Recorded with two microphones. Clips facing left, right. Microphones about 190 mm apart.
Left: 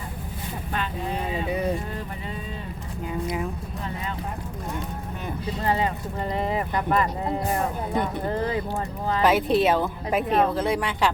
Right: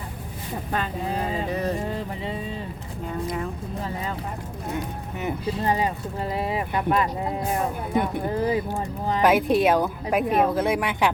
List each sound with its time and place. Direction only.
1.5 s a sound: 10° left (ahead or behind)
3.1 s speech: 5° left (ahead or behind)
5.2 s speech: 15° right (ahead or behind)